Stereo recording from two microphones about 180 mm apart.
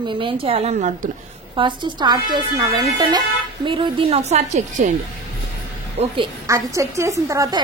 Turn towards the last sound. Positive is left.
turn(degrees=-20)  # may be behind; listen again after turning